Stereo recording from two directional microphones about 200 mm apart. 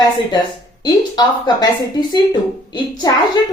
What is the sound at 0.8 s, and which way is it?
Speech, 20° left (ahead or behind).